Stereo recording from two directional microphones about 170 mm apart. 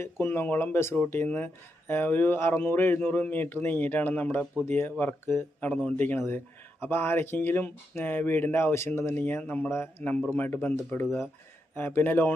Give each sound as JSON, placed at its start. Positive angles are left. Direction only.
{"t": 0.0, "sound": "speech", "side_deg": 15}